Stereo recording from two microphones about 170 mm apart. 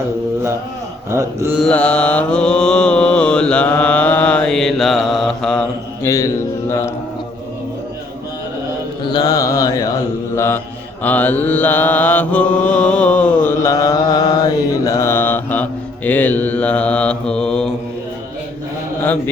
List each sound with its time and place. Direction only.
1.1 s mantra: 15° right (ahead or behind)
1.5 s mantra: 5° left (ahead or behind)
6.0 s mantra: 15° left (ahead or behind)
9.0 s mantra: 25° left (ahead or behind); by 17.7 s 5° left (ahead or behind)